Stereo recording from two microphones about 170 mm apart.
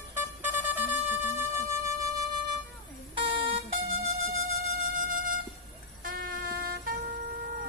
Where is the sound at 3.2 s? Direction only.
30° right (ahead or behind).